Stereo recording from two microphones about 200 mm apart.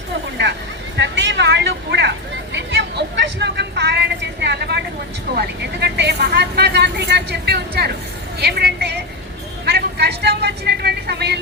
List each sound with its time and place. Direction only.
0.4 s vehicle: 65° right (ahead or behind)
0.9 s a sound: 60° right (ahead or behind)
5.4 s vehicle: 55° right (ahead or behind)
8.4 s speech: 55° right (ahead or behind)
9.6 s vehicle: 55° right (ahead or behind)